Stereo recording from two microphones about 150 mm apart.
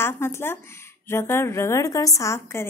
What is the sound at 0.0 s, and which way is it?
A woman's voice, 15° left (ahead or behind).